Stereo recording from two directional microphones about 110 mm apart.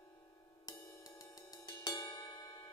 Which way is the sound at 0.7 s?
35° left (ahead or behind).